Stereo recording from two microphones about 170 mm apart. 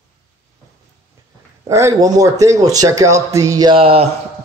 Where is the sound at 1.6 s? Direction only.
20° right (ahead or behind); by 4.1 s 35° right (ahead or behind).